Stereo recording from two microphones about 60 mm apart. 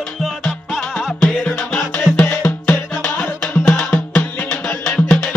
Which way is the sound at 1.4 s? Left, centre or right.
Left.